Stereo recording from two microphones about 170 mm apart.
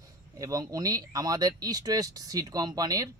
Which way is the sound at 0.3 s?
20° right (ahead or behind).